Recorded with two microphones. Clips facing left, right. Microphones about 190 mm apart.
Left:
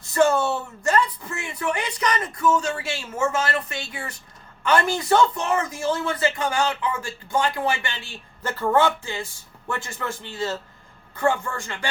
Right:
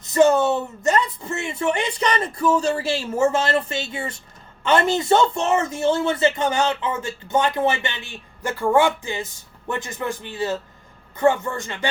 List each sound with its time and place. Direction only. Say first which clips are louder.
0.0 s a man's voice: right 4 dB; 20° right (ahead or behind)